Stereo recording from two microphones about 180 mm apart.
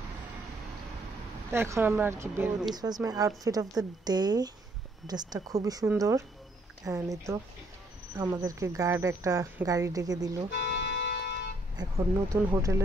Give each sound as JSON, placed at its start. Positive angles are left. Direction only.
{"t": 1.5, "sound": "a woman's voice", "side_deg": -15}
{"t": 10.5, "sound": "music", "side_deg": 70}
{"t": 11.7, "sound": "a woman's voice", "side_deg": -20}